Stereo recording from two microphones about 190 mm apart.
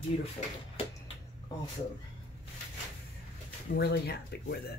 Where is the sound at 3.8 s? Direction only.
55° left (ahead or behind).